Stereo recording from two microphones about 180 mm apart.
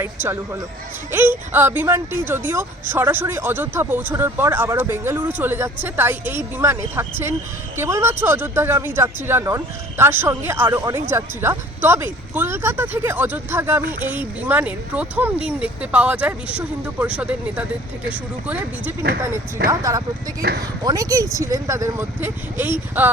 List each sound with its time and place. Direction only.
0.0 s speech: 10° right (ahead or behind)
19.6 s speech: 65° right (ahead or behind)
20.8 s speech: 20° right (ahead or behind)